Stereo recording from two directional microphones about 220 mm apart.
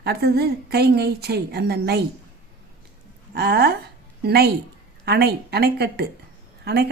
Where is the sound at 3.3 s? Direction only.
45° right (ahead or behind).